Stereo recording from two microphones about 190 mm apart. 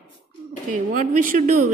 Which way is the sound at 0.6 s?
40° right (ahead or behind).